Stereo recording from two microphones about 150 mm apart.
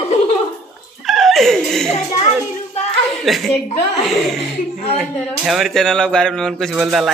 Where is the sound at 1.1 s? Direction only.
Centre (ahead or behind).